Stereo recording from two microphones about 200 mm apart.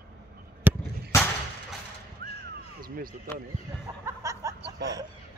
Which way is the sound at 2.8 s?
45° right (ahead or behind).